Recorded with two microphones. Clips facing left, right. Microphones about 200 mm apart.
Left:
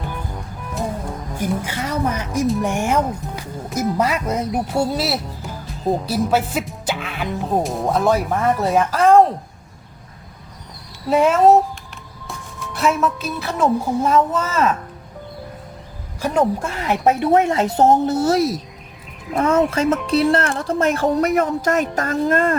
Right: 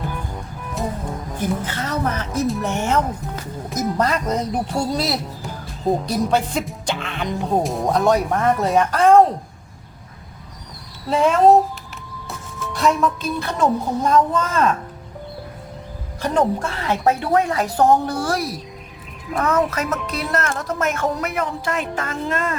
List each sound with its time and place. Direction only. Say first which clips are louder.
1.4 s speech: left 1 dB; 10° left (ahead or behind)
11.1 s speech: left 1 dB; 5° left (ahead or behind)
16.2 s speech: left 1 dB; 10° left (ahead or behind); by 22.5 s 40° left (ahead or behind)